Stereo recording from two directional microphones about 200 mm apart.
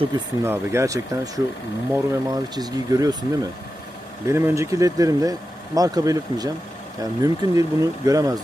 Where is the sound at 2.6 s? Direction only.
20° right (ahead or behind).